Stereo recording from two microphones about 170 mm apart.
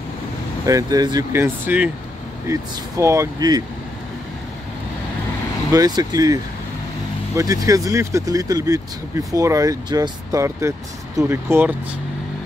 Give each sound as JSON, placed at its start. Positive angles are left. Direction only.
{"t": 0.7, "sound": "speech", "side_deg": -20}
{"t": 5.7, "sound": "speech", "side_deg": -25}